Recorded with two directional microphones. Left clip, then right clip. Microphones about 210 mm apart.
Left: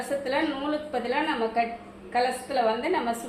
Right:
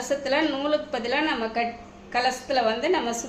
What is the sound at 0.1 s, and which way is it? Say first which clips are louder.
A woman's voice: right 3 dB; 55° right (ahead or behind).